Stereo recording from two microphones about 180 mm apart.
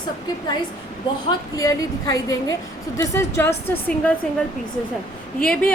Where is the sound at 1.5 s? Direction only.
20° left (ahead or behind).